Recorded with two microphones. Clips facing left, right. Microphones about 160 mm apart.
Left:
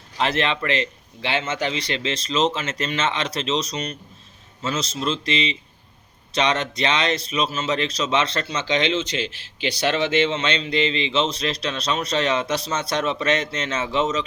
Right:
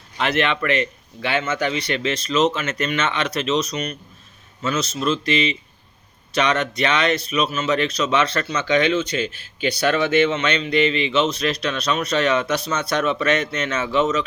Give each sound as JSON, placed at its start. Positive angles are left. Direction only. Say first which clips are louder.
{"t": 0.2, "sound": "speech", "louder": "right 2 dB", "side_deg": 30}